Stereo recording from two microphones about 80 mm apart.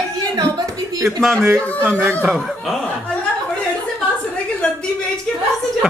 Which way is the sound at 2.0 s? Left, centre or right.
Right.